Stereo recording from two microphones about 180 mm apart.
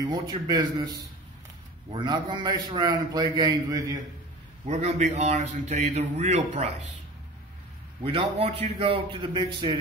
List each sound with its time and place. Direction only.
0.0 s a man's voice: 20° right (ahead or behind)
4.6 s a man's voice: 35° right (ahead or behind)
8.0 s a man's voice: 30° right (ahead or behind)